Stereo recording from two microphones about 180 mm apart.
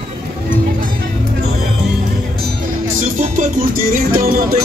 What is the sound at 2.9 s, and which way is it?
Music, 45° right (ahead or behind).